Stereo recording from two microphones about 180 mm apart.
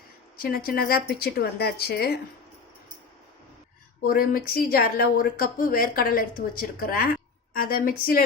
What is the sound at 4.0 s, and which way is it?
Speech, 55° left (ahead or behind).